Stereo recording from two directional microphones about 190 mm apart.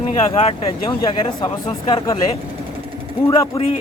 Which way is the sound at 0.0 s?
35° left (ahead or behind).